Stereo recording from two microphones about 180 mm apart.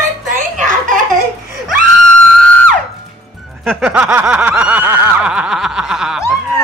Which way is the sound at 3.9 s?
5° right (ahead or behind).